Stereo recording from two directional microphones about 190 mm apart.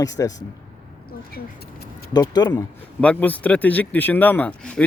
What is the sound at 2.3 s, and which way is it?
Speech, 20° left (ahead or behind).